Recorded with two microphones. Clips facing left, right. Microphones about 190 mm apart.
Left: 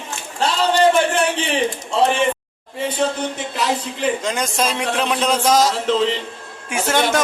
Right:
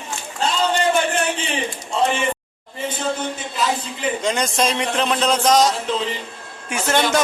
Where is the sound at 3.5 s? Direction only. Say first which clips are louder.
Even; 70° left (ahead or behind).